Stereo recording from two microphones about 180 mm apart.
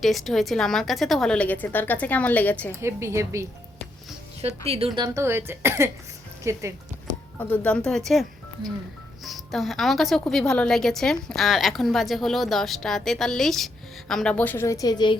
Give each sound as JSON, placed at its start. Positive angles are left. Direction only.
{"t": 0.0, "sound": "a woman's voice", "side_deg": 0}
{"t": 2.8, "sound": "speech", "side_deg": -15}
{"t": 4.4, "sound": "a woman's voice", "side_deg": -35}
{"t": 4.9, "sound": "speech", "side_deg": -20}
{"t": 7.3, "sound": "a woman's voice", "side_deg": 10}